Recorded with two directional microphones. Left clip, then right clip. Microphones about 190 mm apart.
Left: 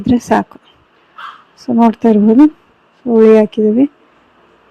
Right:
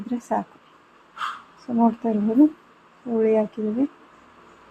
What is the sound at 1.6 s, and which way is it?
Speech, 40° left (ahead or behind).